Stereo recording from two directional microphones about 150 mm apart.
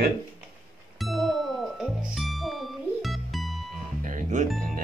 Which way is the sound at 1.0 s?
Centre (ahead or behind).